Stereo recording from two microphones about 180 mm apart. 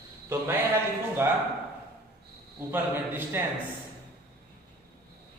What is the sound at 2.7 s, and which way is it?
Speech, 10° right (ahead or behind).